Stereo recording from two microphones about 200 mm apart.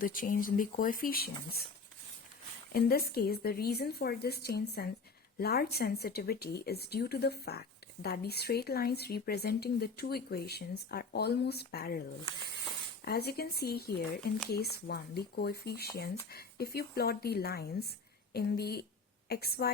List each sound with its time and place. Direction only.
0.0 s speech: 45° left (ahead or behind)
2.7 s speech: 50° left (ahead or behind)
13.1 s speech: 50° left (ahead or behind)